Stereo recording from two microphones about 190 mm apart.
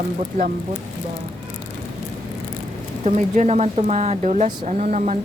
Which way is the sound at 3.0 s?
35° right (ahead or behind).